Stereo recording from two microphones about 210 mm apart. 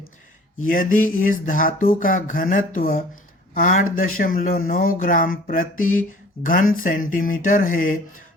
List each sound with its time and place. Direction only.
0.7 s speech: 40° left (ahead or behind)